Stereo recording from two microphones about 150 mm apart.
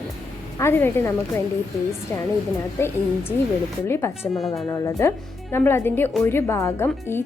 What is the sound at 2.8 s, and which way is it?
Speech, 15° left (ahead or behind).